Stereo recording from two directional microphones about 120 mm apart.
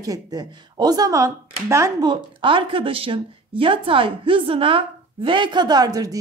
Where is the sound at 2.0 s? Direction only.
45° right (ahead or behind).